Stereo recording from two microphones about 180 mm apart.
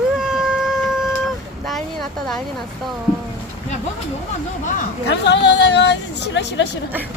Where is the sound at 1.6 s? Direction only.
Centre (ahead or behind).